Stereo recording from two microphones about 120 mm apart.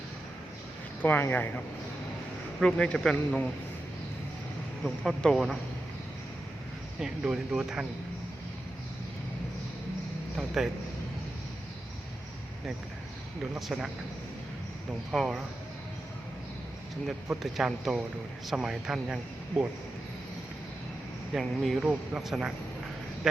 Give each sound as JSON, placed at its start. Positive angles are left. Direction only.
{"t": 1.0, "sound": "speech", "side_deg": 15}
{"t": 4.8, "sound": "a man's voice", "side_deg": 5}
{"t": 7.0, "sound": "a man's voice", "side_deg": -5}
{"t": 10.3, "sound": "a man's voice", "side_deg": -5}
{"t": 13.6, "sound": "a man's voice", "side_deg": -5}
{"t": 15.1, "sound": "a man's voice", "side_deg": 0}
{"t": 17.4, "sound": "a man's voice", "side_deg": -5}
{"t": 21.3, "sound": "a man's voice", "side_deg": 0}